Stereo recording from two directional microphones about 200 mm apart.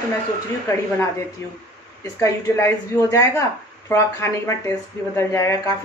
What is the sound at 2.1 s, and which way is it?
Speech, 15° left (ahead or behind).